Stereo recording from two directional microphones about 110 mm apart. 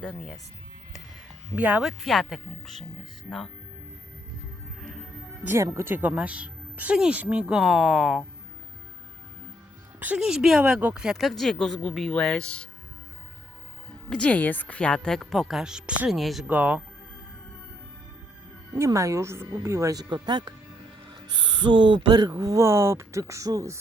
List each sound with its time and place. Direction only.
0.0 s speech: 5° left (ahead or behind)
1.5 s speech: 15° right (ahead or behind)
1.8 s speech: centre (ahead or behind)
5.4 s speech: 20° right (ahead or behind); by 8.2 s 5° right (ahead or behind)
10.2 s speech: 5° right (ahead or behind)
14.1 s speech: 10° left (ahead or behind)
16.5 s speech: 15° right (ahead or behind)
18.9 s speech: 25° right (ahead or behind)